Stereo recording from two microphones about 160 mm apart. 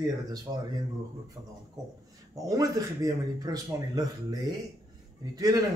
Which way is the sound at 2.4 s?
20° right (ahead or behind).